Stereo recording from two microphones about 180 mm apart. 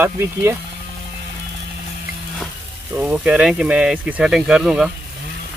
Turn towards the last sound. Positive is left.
turn(degrees=-5)  # may be behind; listen again after turning